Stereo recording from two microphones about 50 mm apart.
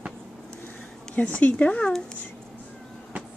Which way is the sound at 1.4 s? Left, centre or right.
Left.